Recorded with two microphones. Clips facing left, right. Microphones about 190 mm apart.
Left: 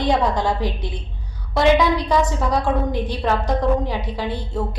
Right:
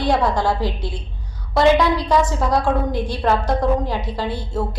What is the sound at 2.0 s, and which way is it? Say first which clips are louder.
Speech: right 1 dB; 10° right (ahead or behind).